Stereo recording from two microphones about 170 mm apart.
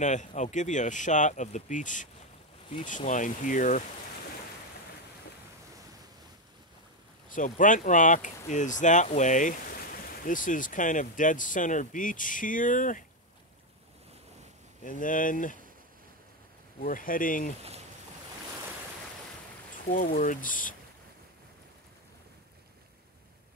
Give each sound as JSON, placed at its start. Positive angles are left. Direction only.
{"t": 0.0, "sound": "speech", "side_deg": 45}
{"t": 3.1, "sound": "speech", "side_deg": 50}
{"t": 7.2, "sound": "speech", "side_deg": 50}
{"t": 14.9, "sound": "speech", "side_deg": 50}
{"t": 16.8, "sound": "speech", "side_deg": 55}
{"t": 19.9, "sound": "speech", "side_deg": 50}